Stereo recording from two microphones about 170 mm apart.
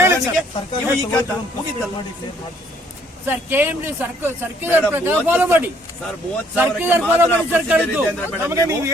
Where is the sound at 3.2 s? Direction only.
10° right (ahead or behind).